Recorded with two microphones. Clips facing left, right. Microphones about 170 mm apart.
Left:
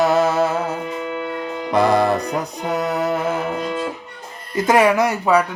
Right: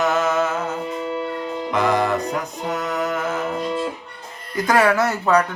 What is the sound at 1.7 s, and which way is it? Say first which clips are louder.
Music: left 4 dB; 35° left (ahead or behind).